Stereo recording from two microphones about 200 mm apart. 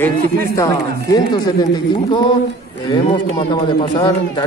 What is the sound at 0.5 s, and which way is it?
Speech, 15° left (ahead or behind).